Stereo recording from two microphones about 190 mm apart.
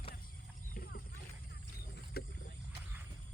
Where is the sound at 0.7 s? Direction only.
55° left (ahead or behind).